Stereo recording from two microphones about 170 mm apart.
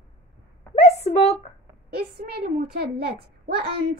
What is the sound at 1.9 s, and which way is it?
A child's voice, 65° right (ahead or behind).